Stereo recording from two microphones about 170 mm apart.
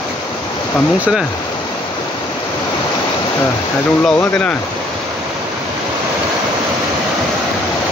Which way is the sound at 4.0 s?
5° left (ahead or behind).